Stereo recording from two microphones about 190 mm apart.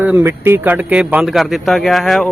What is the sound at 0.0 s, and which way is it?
Speech, 10° right (ahead or behind).